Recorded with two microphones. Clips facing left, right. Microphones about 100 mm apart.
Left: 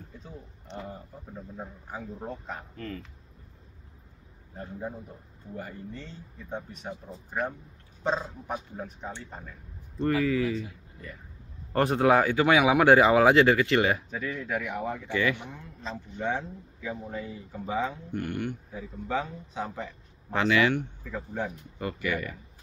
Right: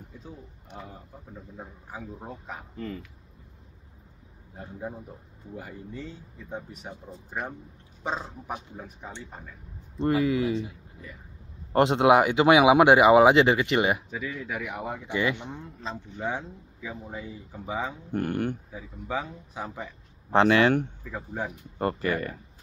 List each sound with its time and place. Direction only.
1.9 s speech: 5° right (ahead or behind)
5.6 s speech: 10° right (ahead or behind)
8.0 s speech: 10° right (ahead or behind)
9.9 s speech: 20° right (ahead or behind)
11.7 s speech: 20° right (ahead or behind)
16.8 s speech: 15° right (ahead or behind)
18.1 s speech: 45° right (ahead or behind)
19.0 s speech: 10° right (ahead or behind)
20.3 s speech: 35° right (ahead or behind)
21.1 s speech: 15° right (ahead or behind)
21.7 s speech: 40° right (ahead or behind)